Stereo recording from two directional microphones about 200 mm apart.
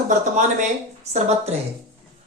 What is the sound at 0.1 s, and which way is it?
Speech, 40° right (ahead or behind).